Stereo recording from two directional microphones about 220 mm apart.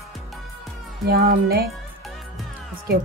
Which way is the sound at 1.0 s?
45° right (ahead or behind).